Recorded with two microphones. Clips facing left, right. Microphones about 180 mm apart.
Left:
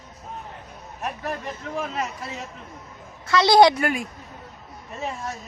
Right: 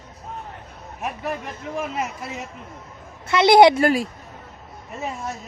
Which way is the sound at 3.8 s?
35° right (ahead or behind).